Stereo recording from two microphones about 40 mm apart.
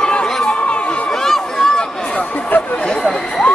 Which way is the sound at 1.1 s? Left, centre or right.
Centre.